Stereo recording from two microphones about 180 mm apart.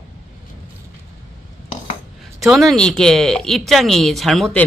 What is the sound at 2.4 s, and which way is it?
Speech, centre (ahead or behind).